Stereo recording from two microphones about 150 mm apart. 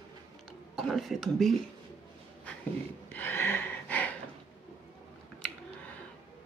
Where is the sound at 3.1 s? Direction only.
15° left (ahead or behind).